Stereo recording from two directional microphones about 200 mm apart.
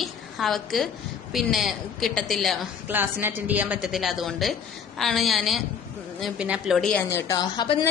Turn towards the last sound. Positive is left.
turn(degrees=20)  # may be behind; listen again after turning